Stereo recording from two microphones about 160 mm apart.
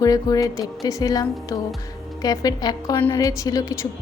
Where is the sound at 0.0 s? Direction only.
20° left (ahead or behind).